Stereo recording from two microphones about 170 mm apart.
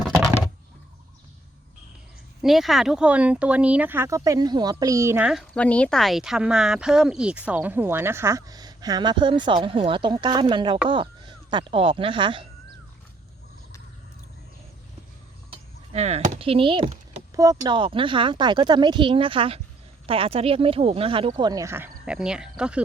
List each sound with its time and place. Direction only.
2.4 s a woman's voice: centre (ahead or behind)
5.3 s a woman's voice: 5° left (ahead or behind); by 12.5 s 30° right (ahead or behind)
15.9 s speech: 40° right (ahead or behind)
17.3 s speech: 20° right (ahead or behind); by 22.8 s 5° right (ahead or behind)